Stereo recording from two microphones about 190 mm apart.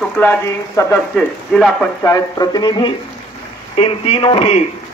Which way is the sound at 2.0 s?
20° left (ahead or behind).